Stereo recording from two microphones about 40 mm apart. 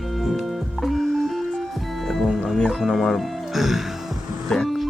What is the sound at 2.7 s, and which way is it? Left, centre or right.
Speech, centre.